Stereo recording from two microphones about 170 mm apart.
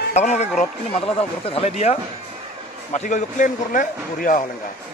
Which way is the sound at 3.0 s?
45° left (ahead or behind).